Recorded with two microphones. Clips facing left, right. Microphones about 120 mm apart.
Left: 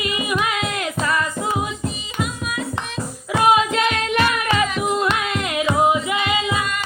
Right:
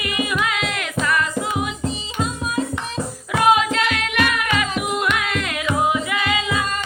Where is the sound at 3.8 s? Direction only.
30° left (ahead or behind).